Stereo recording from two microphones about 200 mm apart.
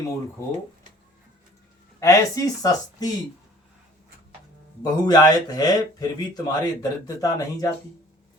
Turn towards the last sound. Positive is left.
turn(degrees=15)  # may be behind; listen again after turning